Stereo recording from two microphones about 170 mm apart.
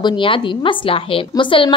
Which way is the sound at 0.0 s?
30° left (ahead or behind).